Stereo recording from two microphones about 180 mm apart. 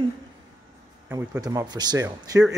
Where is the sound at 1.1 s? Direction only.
15° right (ahead or behind).